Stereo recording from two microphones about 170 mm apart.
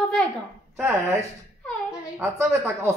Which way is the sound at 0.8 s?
15° right (ahead or behind).